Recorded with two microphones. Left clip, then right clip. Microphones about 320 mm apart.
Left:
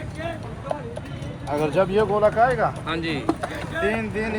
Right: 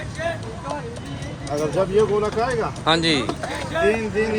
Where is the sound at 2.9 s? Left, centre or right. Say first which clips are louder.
Right 8 dB; centre.